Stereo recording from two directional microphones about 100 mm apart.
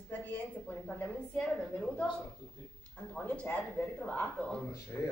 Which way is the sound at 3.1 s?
15° left (ahead or behind).